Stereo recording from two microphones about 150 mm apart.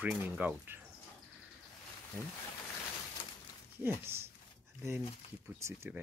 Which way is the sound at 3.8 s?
15° right (ahead or behind).